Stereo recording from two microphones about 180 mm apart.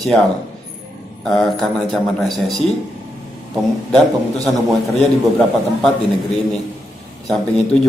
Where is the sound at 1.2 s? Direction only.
Centre (ahead or behind).